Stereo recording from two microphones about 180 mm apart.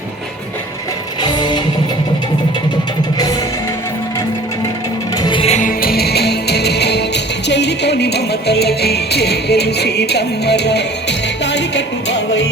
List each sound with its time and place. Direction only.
1.2 s music: 25° left (ahead or behind)
5.1 s music: 25° left (ahead or behind); by 12.5 s 75° left (ahead or behind)